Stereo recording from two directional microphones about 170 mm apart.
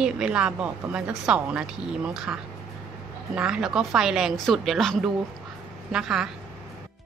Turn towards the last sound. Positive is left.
turn(degrees=-5)  # may be behind; listen again after turning